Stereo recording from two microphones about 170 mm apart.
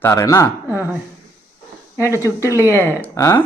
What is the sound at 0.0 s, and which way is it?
Speech, 20° left (ahead or behind).